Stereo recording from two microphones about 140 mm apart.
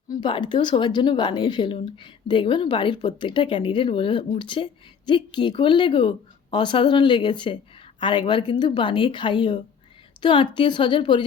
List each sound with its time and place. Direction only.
0.1 s a woman's voice: 35° left (ahead or behind)